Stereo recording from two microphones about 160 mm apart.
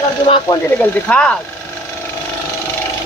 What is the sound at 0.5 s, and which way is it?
Speech, 25° left (ahead or behind).